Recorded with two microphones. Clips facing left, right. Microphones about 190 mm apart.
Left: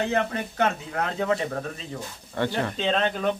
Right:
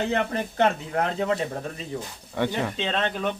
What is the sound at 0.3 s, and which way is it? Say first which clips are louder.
Speech: right 2 dB; 35° right (ahead or behind).